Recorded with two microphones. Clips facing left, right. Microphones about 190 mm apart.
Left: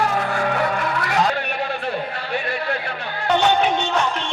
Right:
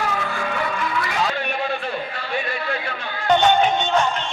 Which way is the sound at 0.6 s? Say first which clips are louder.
Left 2 dB; 50° left (ahead or behind).